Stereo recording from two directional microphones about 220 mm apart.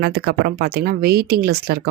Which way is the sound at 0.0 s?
45° right (ahead or behind).